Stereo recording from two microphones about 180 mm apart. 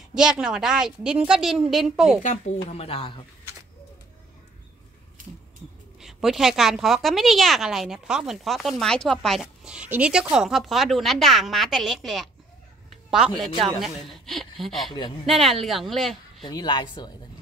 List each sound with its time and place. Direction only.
0.1 s a woman's voice: 5° right (ahead or behind)
2.2 s speech: 35° left (ahead or behind)
5.9 s a woman's voice: centre (ahead or behind)
16.4 s speech: 25° left (ahead or behind)